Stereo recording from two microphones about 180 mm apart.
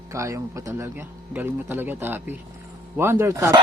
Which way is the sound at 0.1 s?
15° right (ahead or behind).